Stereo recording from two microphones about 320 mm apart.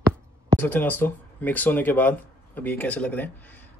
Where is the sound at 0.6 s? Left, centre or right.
Centre.